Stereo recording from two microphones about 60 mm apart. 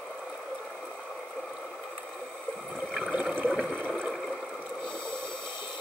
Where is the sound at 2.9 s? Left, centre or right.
Centre.